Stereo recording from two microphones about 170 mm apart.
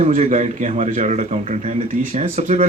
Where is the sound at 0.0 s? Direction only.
45° right (ahead or behind).